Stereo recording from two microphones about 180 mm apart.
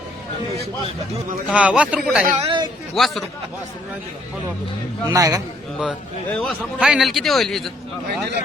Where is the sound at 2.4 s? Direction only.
25° right (ahead or behind).